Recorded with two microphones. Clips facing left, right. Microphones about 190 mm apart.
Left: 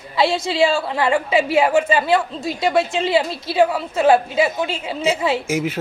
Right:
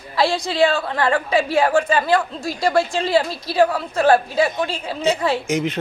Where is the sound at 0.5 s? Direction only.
25° left (ahead or behind).